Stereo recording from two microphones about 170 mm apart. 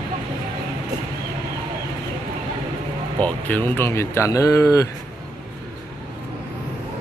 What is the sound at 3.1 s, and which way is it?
Speech, 10° left (ahead or behind).